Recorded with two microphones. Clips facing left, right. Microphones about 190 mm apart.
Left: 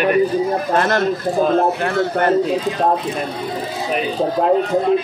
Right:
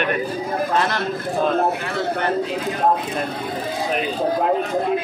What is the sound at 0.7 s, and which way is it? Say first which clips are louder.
Speech: left 5 dB; 50° left (ahead or behind).